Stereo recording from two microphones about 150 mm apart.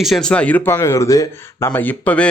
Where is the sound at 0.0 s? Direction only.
Centre (ahead or behind).